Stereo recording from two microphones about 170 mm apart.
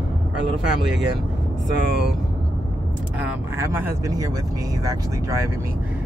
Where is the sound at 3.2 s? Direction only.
15° right (ahead or behind).